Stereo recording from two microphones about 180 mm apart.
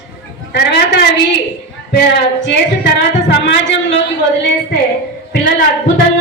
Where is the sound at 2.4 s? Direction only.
70° left (ahead or behind).